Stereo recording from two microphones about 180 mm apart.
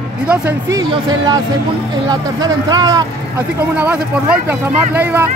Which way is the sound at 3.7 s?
10° right (ahead or behind).